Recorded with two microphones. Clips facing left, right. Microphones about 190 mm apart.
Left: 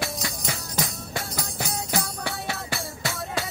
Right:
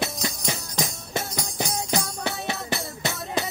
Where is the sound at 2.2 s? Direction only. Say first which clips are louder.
Right 3 dB; 20° right (ahead or behind).